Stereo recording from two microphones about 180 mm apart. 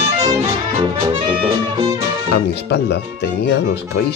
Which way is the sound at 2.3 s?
70° left (ahead or behind).